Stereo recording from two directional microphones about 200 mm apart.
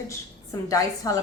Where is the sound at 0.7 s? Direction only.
15° left (ahead or behind).